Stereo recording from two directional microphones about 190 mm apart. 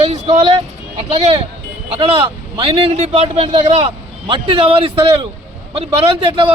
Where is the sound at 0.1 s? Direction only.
35° right (ahead or behind).